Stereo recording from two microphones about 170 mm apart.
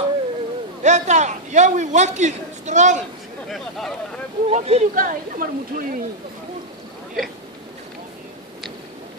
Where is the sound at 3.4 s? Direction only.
Centre (ahead or behind).